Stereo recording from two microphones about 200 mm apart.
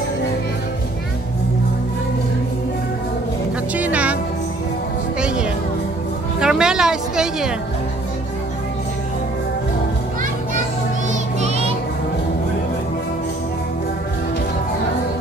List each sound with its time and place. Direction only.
3.7 s music: 5° right (ahead or behind)
5.2 s music: 5° right (ahead or behind)
6.4 s a sound: 5° right (ahead or behind)
11.4 s music: 30° right (ahead or behind)